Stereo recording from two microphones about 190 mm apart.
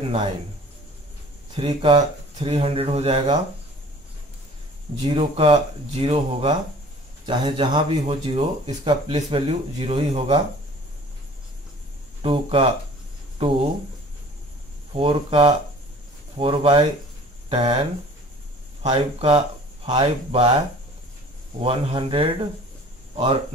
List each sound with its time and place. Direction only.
1.6 s speech: 25° right (ahead or behind)
5.0 s speech: 30° right (ahead or behind)
12.2 s speech: 30° right (ahead or behind)
15.0 s speech: 30° right (ahead or behind)
18.8 s speech: 30° right (ahead or behind)